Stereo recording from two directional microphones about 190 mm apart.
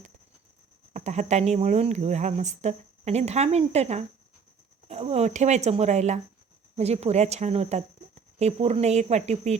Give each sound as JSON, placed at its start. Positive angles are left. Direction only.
{"t": 0.9, "sound": "speech", "side_deg": -40}